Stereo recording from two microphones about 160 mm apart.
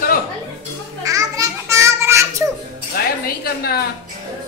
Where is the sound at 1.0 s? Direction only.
20° right (ahead or behind).